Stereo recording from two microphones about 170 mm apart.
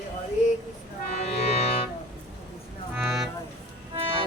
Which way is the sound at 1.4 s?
35° left (ahead or behind).